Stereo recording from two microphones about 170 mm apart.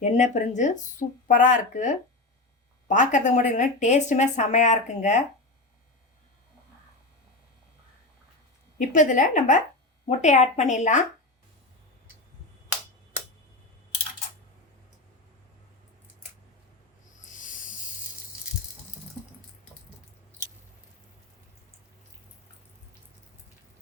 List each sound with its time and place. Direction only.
0.0 s speech: 45° left (ahead or behind)
8.8 s speech: 50° left (ahead or behind)
17.2 s rub: 50° left (ahead or behind)